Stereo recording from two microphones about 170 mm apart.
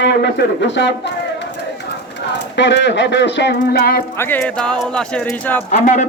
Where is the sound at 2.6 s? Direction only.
90° left; by 4.0 s 65° left (ahead or behind).